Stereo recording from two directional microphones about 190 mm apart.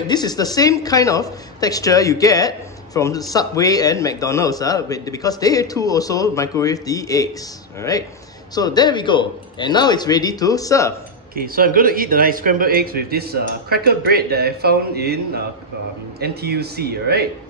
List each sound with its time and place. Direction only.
0.0 s speech: 20° left (ahead or behind)
11.3 s a man's voice: 50° right (ahead or behind)